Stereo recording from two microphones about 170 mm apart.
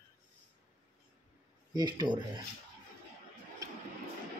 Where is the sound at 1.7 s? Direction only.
25° right (ahead or behind).